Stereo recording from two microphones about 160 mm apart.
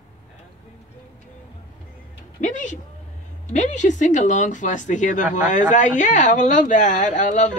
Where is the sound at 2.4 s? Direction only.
50° left (ahead or behind).